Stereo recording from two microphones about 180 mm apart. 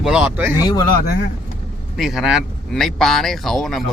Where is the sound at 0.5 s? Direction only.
20° left (ahead or behind).